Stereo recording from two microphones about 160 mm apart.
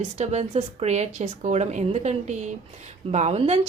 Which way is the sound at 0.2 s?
45° right (ahead or behind).